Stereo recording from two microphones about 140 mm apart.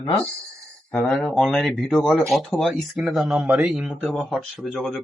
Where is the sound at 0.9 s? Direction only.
5° left (ahead or behind).